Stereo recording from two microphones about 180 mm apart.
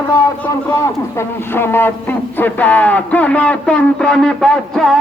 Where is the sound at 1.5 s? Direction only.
10° left (ahead or behind).